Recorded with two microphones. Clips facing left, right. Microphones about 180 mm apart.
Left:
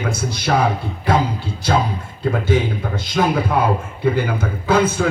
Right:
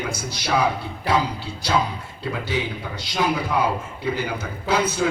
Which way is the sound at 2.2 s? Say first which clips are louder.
Left 8 dB; 50° left (ahead or behind).